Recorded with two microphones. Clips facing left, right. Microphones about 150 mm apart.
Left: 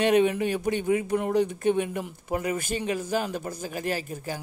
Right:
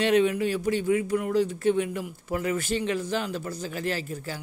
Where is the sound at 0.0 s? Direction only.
20° left (ahead or behind).